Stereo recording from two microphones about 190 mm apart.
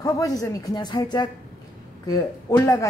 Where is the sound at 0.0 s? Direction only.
20° left (ahead or behind).